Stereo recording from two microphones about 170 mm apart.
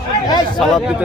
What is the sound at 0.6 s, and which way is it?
Speech, centre (ahead or behind).